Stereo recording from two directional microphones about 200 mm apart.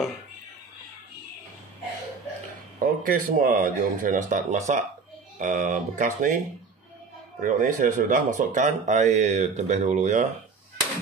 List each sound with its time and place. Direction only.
2.8 s speech: 45° right (ahead or behind)
7.4 s speech: 40° right (ahead or behind)